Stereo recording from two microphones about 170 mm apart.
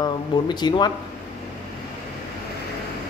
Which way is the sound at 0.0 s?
25° left (ahead or behind).